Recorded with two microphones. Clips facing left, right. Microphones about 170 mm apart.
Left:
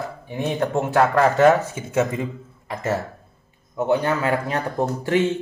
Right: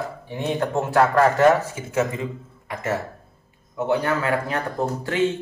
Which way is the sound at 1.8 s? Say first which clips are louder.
Left 2 dB; 25° left (ahead or behind).